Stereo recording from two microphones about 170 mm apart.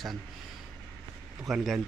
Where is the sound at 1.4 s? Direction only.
Centre (ahead or behind).